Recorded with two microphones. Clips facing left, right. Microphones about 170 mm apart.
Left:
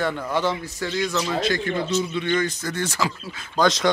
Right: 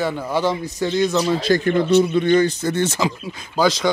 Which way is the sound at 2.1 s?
40° right (ahead or behind).